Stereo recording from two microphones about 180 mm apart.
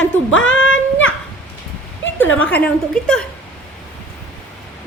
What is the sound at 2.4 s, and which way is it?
Speech, 10° left (ahead or behind).